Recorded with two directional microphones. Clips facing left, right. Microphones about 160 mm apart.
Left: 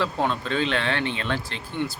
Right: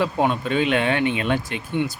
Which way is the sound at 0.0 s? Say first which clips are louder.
Right 4 dB; 10° right (ahead or behind).